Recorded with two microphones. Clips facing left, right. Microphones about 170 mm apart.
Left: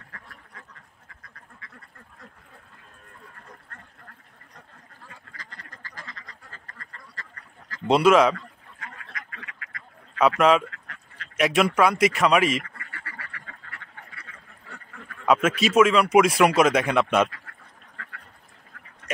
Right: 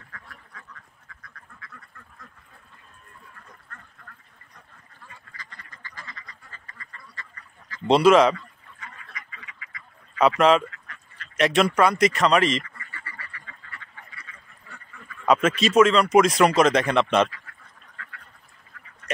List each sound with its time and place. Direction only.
5.4 s duck: 35° left (ahead or behind)
7.8 s speech: centre (ahead or behind)
8.4 s duck: 60° left (ahead or behind)
10.1 s speech: centre (ahead or behind)
12.6 s duck: 65° left (ahead or behind)
15.2 s speech: 5° left (ahead or behind)
17.3 s duck: 60° left (ahead or behind)